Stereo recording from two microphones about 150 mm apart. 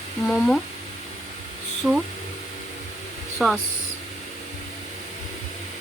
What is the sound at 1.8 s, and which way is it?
Speech, 5° right (ahead or behind).